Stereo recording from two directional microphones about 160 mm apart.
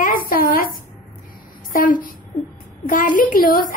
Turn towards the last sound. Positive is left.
turn(degrees=60)  # may be behind; listen again after turning